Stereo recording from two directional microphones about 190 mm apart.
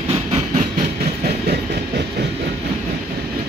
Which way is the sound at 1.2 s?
55° right (ahead or behind).